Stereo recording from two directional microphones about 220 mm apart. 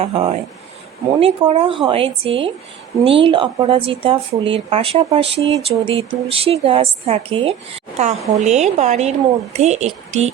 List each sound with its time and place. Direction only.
0.0 s a woman's voice: 25° right (ahead or behind)